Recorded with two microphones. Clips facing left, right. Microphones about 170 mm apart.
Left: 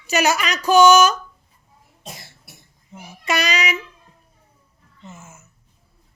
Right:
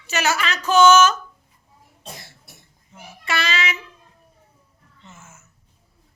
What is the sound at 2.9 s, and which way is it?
Child singing, 20° left (ahead or behind).